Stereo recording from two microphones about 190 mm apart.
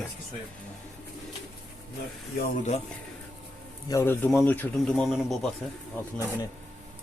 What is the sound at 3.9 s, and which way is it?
A man's voice, 10° left (ahead or behind).